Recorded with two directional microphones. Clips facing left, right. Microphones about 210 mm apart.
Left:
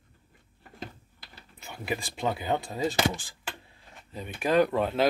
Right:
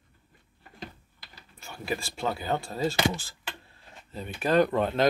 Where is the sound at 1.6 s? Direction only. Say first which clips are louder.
Even; 20° left (ahead or behind).